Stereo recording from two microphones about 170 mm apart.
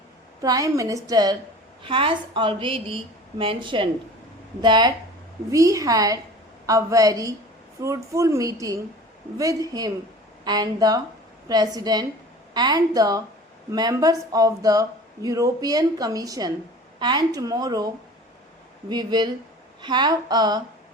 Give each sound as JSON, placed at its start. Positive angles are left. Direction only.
{"t": 0.4, "sound": "a woman's voice", "side_deg": -20}